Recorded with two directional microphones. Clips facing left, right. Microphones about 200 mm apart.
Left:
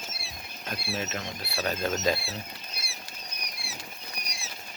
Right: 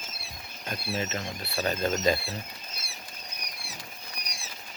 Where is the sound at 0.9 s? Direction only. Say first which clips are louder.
Right 2 dB; centre (ahead or behind).